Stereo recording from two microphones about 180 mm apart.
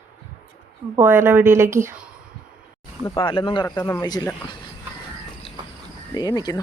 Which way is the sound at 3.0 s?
25° left (ahead or behind).